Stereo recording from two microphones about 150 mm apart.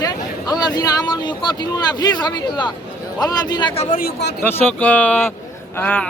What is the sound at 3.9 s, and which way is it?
Speech, 90° left.